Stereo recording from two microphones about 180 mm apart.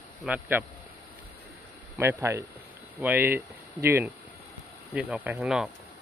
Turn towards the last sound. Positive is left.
turn(degrees=-5)  # may be behind; listen again after turning